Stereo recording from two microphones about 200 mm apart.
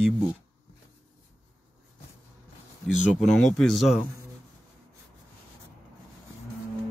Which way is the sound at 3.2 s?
Centre (ahead or behind).